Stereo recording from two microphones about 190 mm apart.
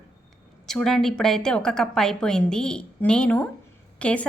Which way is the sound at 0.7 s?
Centre (ahead or behind).